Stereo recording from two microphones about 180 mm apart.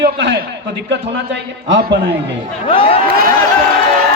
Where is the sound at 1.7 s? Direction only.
65° right (ahead or behind).